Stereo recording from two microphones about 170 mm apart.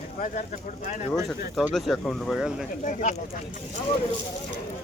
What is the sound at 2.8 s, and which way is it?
Speech, 50° left (ahead or behind).